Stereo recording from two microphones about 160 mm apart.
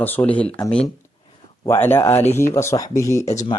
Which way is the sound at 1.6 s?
15° left (ahead or behind).